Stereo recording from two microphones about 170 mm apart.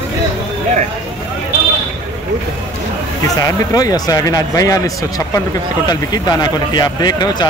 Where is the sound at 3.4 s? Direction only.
20° left (ahead or behind).